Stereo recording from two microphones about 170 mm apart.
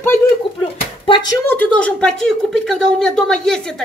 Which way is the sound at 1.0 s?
30° left (ahead or behind).